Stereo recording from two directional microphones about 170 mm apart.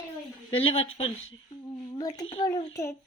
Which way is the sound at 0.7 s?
35° left (ahead or behind).